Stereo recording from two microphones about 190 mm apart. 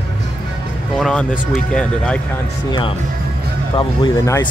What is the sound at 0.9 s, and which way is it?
Speech, centre (ahead or behind).